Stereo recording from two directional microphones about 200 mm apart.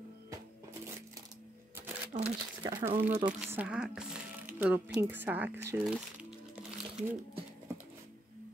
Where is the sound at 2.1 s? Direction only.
30° right (ahead or behind).